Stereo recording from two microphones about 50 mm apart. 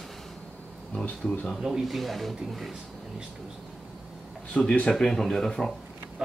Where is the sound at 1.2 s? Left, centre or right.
Centre.